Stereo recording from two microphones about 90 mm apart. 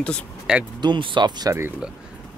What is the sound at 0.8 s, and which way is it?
Speech, 60° right (ahead or behind).